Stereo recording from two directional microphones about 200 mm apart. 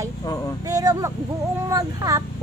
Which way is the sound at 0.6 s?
15° right (ahead or behind).